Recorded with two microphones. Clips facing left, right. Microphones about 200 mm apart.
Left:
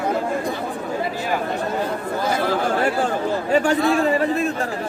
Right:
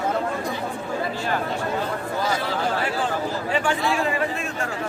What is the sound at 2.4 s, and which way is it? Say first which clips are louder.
A man's voice: left 5 dB; 50° left (ahead or behind).